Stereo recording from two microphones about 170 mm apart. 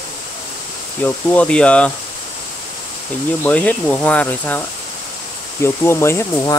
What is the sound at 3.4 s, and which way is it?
Speech, 5° left (ahead or behind).